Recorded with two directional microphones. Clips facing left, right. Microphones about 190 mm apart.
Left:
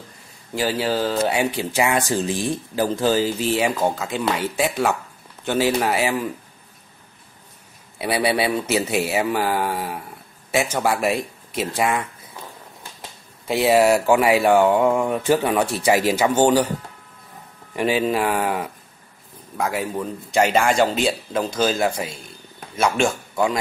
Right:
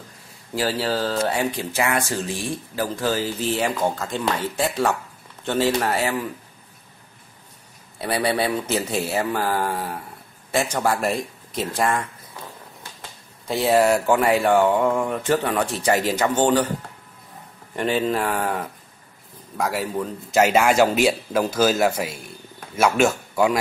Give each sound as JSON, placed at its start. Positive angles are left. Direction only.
{"t": 0.7, "sound": "a man's voice", "side_deg": 15}
{"t": 8.0, "sound": "speech", "side_deg": 10}
{"t": 13.5, "sound": "speech", "side_deg": 10}
{"t": 17.7, "sound": "a man's voice", "side_deg": 10}